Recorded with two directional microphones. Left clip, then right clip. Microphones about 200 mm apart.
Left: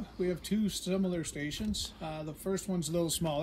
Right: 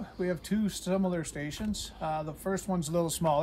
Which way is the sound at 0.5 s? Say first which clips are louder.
Right 2 dB; 30° right (ahead or behind).